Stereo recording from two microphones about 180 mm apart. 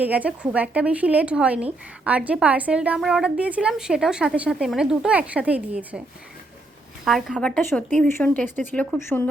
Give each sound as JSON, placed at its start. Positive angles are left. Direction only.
{"t": 0.0, "sound": "a woman's voice", "side_deg": -10}
{"t": 7.0, "sound": "a woman's voice", "side_deg": 0}